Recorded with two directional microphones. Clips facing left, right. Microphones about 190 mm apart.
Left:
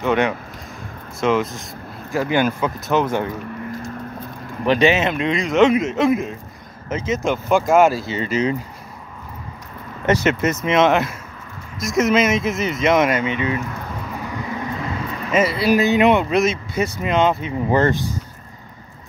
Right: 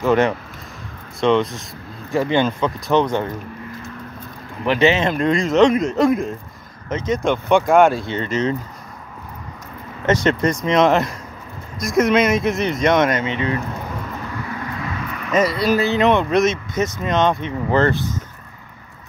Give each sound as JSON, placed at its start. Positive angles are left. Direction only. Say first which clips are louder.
{"t": 0.0, "sound": "speech", "louder": "right 2 dB", "side_deg": 0}
{"t": 4.6, "sound": "speech", "louder": "even", "side_deg": 15}
{"t": 5.3, "sound": "speech", "louder": "right 1 dB", "side_deg": 0}
{"t": 10.0, "sound": "speech", "louder": "right 1 dB", "side_deg": 5}
{"t": 14.1, "sound": "vehicle", "louder": "left 1 dB", "side_deg": 15}
{"t": 15.6, "sound": "speech", "louder": "left 5 dB", "side_deg": 15}